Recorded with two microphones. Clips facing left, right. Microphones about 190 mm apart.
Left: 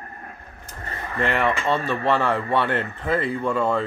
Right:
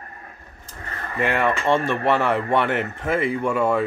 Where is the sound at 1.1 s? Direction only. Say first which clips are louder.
Right 1 dB; 10° right (ahead or behind).